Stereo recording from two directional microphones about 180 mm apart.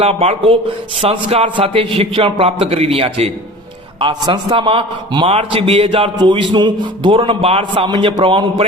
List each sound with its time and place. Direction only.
0.0 s a man's voice: 35° right (ahead or behind)